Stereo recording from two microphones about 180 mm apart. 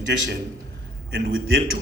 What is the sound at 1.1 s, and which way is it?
Speech, 60° right (ahead or behind).